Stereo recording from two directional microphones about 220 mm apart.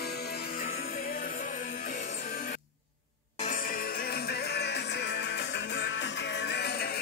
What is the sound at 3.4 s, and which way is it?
Music, 35° left (ahead or behind).